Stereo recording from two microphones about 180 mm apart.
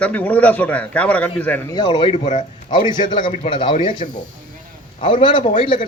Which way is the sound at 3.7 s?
45° left (ahead or behind).